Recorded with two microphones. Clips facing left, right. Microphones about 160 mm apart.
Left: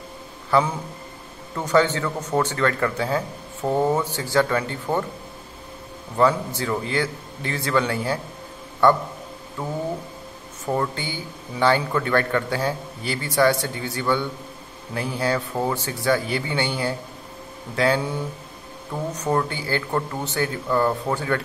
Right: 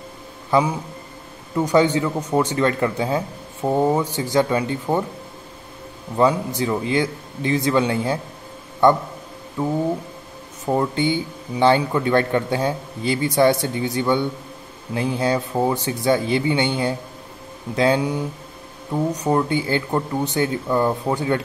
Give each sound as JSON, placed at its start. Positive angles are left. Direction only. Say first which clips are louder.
{"t": 0.5, "sound": "speech", "louder": "right 2 dB", "side_deg": -15}
{"t": 6.1, "sound": "speech", "louder": "right 2 dB", "side_deg": -15}
{"t": 10.7, "sound": "speech", "louder": "right 6 dB", "side_deg": -20}
{"t": 19.2, "sound": "speech", "louder": "right 2 dB", "side_deg": -15}